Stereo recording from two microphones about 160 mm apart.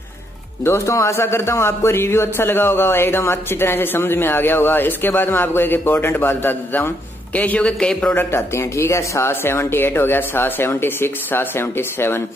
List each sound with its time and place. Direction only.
0.7 s a man's voice: 20° left (ahead or behind)